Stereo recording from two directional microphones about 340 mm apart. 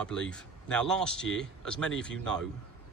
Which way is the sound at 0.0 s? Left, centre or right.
Centre.